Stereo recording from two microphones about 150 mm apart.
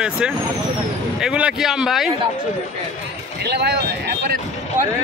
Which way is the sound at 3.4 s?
90° right.